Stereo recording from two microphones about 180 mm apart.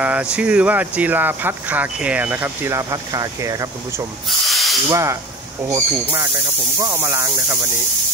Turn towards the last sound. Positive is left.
turn(degrees=-15)  # may be behind; listen again after turning